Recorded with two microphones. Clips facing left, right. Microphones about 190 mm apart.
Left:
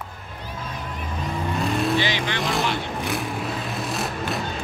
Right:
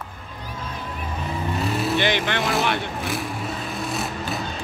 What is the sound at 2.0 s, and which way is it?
Speech, 55° right (ahead or behind).